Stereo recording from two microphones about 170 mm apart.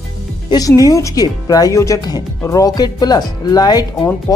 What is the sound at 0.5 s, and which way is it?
Speech, 20° left (ahead or behind).